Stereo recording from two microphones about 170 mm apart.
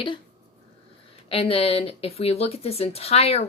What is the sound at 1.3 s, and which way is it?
Speech, 35° left (ahead or behind).